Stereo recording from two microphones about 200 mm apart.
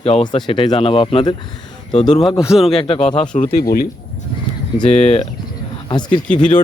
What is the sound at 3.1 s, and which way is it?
Speech, 40° left (ahead or behind).